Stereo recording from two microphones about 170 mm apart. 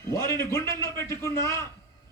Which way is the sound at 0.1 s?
20° left (ahead or behind).